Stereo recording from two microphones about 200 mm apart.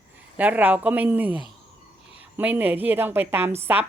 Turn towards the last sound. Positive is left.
turn(degrees=-10)  # may be behind; listen again after turning